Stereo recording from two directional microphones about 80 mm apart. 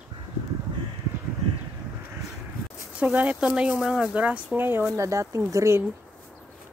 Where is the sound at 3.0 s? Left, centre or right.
Centre.